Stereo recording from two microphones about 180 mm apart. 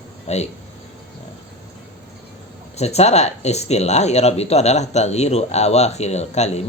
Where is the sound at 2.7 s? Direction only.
35° left (ahead or behind).